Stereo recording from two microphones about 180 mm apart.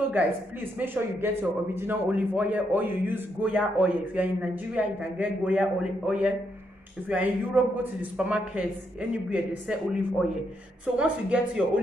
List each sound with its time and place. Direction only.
0.7 s speech: 10° right (ahead or behind)